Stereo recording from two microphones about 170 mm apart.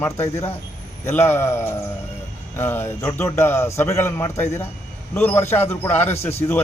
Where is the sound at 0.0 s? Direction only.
15° left (ahead or behind).